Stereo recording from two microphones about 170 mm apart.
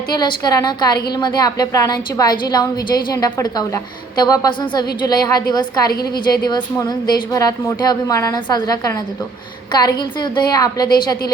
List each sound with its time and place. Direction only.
0.1 s a woman's voice: 25° left (ahead or behind)